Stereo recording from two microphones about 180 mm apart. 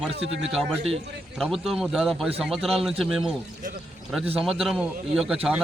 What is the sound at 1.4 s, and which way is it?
A man's voice, centre (ahead or behind).